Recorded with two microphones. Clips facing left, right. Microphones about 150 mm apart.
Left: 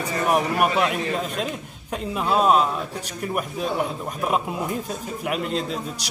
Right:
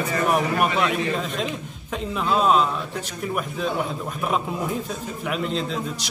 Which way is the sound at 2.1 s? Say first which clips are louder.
Left 1 dB; 5° left (ahead or behind).